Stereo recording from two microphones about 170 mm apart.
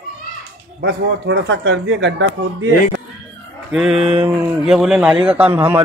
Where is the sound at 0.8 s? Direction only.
90° right.